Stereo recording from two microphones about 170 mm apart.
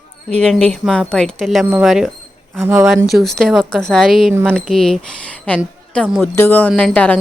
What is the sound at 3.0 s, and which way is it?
Speech, centre (ahead or behind).